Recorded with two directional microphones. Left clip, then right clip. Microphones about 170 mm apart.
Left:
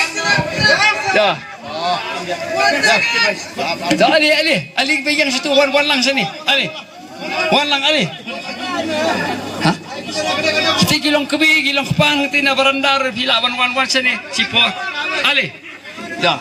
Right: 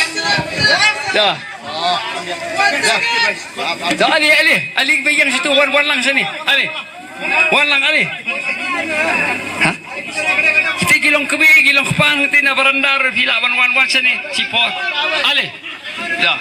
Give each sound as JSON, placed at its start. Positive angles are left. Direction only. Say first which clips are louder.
{"t": 0.0, "sound": "music", "louder": "even", "side_deg": -60}
{"t": 1.8, "sound": "a man's voice", "louder": "right 2 dB", "side_deg": -60}
{"t": 16.0, "sound": "a sound", "louder": "right 2 dB", "side_deg": 0}